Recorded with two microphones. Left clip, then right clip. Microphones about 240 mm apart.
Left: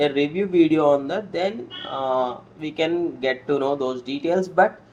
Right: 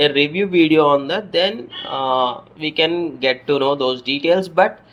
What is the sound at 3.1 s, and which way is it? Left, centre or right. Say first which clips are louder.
Speech: right 5 dB; right.